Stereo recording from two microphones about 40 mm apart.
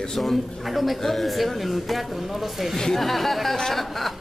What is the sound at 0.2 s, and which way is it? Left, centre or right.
A man's voice, centre.